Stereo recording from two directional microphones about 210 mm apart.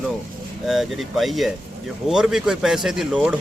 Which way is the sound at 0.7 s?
Centre (ahead or behind).